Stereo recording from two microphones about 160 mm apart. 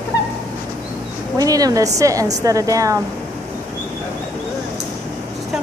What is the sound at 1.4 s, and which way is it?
A woman's voice, 20° right (ahead or behind).